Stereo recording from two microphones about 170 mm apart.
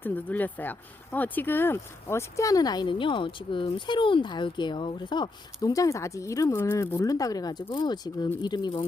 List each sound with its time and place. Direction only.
0.0 s speech: 10° left (ahead or behind); by 8.9 s 30° left (ahead or behind)